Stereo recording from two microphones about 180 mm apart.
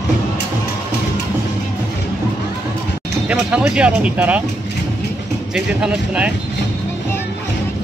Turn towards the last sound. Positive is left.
turn(degrees=-5)  # may be behind; listen again after turning